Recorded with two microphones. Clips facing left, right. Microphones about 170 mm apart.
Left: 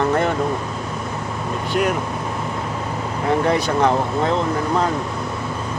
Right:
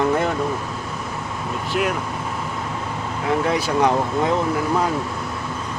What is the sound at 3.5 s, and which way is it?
Speech, 5° right (ahead or behind).